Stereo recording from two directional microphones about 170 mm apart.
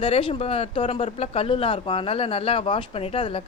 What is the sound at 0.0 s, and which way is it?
Speech, 30° left (ahead or behind).